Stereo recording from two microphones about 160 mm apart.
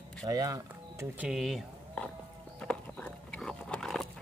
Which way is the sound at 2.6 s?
5° left (ahead or behind).